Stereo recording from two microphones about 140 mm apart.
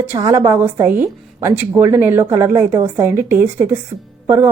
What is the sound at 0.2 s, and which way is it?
A woman's voice, 25° right (ahead or behind).